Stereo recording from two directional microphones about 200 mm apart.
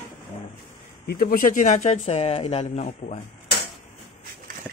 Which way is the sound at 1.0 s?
50° left (ahead or behind).